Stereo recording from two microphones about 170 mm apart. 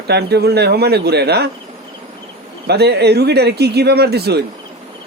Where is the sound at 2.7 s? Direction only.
70° right (ahead or behind).